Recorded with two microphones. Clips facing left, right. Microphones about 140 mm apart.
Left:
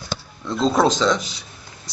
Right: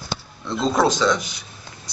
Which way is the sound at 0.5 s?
5° right (ahead or behind).